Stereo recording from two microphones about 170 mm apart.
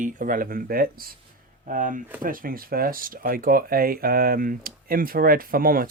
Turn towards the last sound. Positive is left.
turn(degrees=-55)  # may be behind; listen again after turning